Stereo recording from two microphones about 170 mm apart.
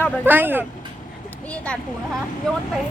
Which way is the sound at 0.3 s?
10° right (ahead or behind).